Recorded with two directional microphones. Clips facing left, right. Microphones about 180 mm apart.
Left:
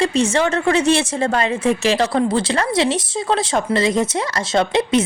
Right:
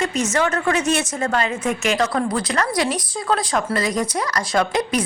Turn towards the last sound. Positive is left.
turn(degrees=25)  # may be behind; listen again after turning